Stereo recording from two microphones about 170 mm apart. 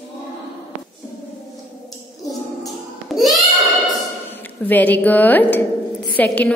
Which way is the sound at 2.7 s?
Centre (ahead or behind).